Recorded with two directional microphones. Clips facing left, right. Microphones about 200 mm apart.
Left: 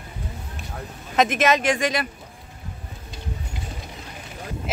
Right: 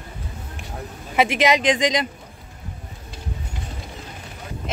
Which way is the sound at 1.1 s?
10° right (ahead or behind).